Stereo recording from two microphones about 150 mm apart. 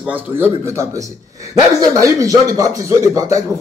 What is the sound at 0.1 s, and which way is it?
A man's voice, 15° right (ahead or behind).